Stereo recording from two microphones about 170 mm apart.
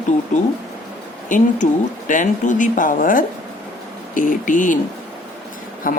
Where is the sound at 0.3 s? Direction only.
45° left (ahead or behind).